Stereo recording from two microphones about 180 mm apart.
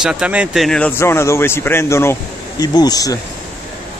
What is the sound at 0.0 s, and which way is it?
Speech, 5° right (ahead or behind).